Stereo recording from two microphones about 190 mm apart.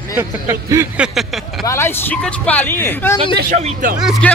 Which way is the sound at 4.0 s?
Centre (ahead or behind).